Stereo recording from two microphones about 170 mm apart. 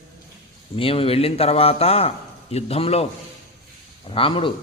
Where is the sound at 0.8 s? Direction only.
35° left (ahead or behind).